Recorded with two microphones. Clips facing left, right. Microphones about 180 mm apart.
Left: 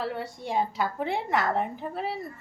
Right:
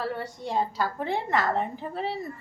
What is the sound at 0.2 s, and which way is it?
A woman's voice, 10° left (ahead or behind).